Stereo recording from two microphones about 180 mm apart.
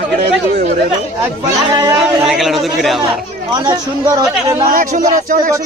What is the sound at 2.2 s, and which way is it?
Speech, centre (ahead or behind).